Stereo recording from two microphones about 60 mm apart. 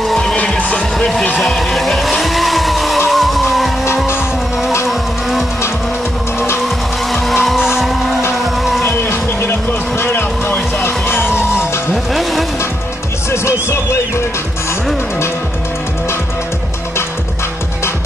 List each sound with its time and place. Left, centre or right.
0.0 s music: centre
0.6 s music: left
0.9 s music: centre
1.4 s vehicle: centre
7.1 s vehicle: centre
8.8 s music: left
11.9 s music: centre
13.3 s music: left